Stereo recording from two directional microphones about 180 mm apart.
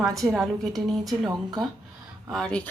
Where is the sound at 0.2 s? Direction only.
Centre (ahead or behind).